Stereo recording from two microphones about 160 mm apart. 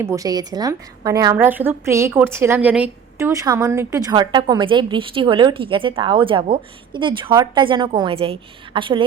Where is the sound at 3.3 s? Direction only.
20° right (ahead or behind).